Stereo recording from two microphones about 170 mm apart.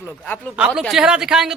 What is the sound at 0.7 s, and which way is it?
Speech, centre (ahead or behind).